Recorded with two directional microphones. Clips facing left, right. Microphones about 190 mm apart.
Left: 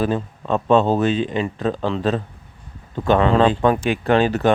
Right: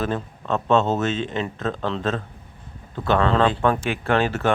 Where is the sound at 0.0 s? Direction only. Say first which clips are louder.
Left 4 dB; 10° left (ahead or behind).